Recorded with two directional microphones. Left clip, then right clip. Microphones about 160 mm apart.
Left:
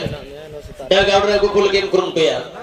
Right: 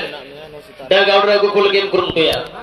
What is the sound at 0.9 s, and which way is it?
A man's voice, 90° left.